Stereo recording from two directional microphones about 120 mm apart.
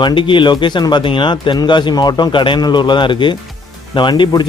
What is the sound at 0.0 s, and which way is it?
Speech, 45° left (ahead or behind).